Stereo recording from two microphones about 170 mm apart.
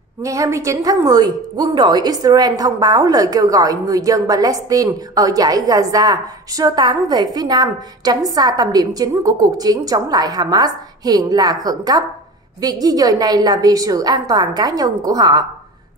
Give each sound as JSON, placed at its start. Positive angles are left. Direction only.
{"t": 0.2, "sound": "a woman's voice", "side_deg": -20}